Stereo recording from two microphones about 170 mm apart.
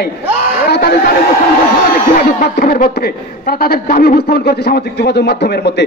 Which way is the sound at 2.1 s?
55° left (ahead or behind).